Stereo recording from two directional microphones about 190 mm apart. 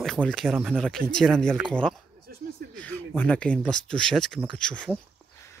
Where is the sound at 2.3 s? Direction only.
50° right (ahead or behind).